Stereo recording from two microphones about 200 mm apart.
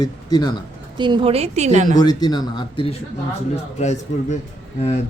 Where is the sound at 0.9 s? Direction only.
25° right (ahead or behind).